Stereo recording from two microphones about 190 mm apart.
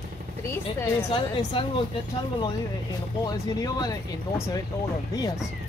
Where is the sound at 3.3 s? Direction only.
20° left (ahead or behind).